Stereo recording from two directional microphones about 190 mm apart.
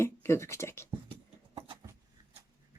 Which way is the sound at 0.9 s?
30° right (ahead or behind).